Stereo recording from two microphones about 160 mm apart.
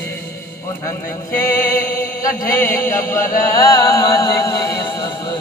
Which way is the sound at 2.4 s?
15° left (ahead or behind).